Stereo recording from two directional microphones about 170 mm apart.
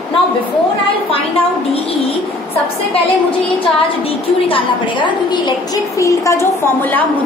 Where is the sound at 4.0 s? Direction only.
30° left (ahead or behind).